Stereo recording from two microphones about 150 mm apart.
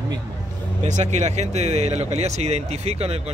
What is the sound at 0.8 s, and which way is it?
Speech, 50° right (ahead or behind).